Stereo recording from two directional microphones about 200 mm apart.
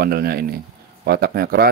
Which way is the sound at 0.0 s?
50° right (ahead or behind).